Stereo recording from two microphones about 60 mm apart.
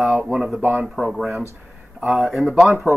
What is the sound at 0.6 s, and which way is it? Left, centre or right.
Speech, right.